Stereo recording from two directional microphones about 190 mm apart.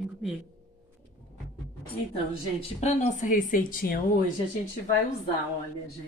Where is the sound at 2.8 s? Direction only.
40° left (ahead or behind).